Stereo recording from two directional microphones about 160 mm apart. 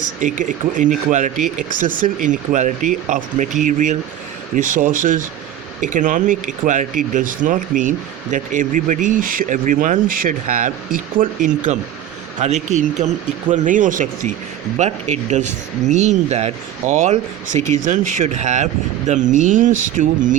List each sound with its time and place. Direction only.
0.2 s speech: 50° right (ahead or behind)